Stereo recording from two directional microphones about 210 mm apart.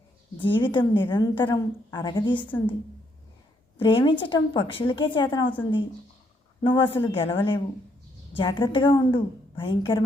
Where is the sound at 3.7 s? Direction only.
25° left (ahead or behind).